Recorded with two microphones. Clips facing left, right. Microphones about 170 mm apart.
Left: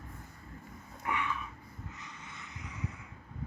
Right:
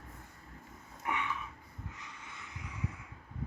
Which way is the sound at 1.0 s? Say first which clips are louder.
Left 1 dB; 20° right (ahead or behind).